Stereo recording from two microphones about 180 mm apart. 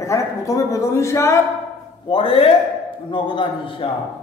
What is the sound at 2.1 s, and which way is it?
A man's voice, 30° left (ahead or behind).